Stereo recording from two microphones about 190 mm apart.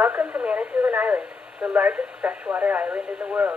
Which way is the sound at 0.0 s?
5° right (ahead or behind).